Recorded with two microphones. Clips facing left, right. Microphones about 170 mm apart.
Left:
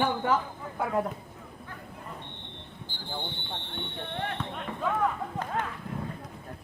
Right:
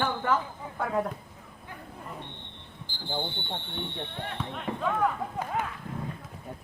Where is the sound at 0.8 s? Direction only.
Centre (ahead or behind).